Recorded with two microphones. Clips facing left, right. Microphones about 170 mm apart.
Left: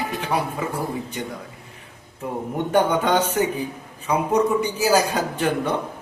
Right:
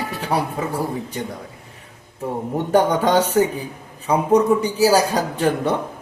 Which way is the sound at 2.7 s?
35° right (ahead or behind).